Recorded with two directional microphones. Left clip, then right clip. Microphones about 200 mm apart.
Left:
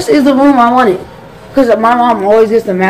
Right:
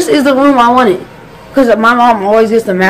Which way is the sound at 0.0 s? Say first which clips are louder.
Even; 15° right (ahead or behind).